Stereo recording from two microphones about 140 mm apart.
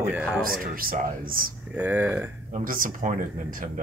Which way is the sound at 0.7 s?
90° right.